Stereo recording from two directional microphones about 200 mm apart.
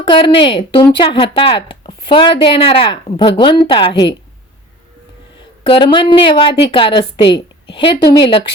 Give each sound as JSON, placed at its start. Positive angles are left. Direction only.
{"t": 0.0, "sound": "speech", "side_deg": 25}
{"t": 5.4, "sound": "speech", "side_deg": 25}